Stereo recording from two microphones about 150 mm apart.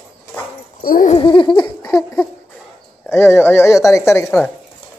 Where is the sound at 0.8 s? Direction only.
70° left (ahead or behind).